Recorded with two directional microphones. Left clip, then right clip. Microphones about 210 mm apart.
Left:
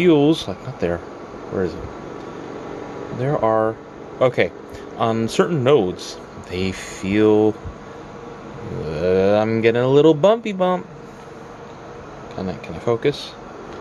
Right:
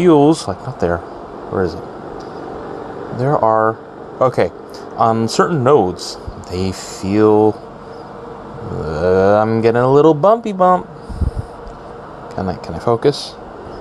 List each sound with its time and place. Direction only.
0.0 s speech: 5° right (ahead or behind)
3.2 s speech: 10° right (ahead or behind)
8.8 s speech: 10° right (ahead or behind)
12.4 s speech: 20° right (ahead or behind)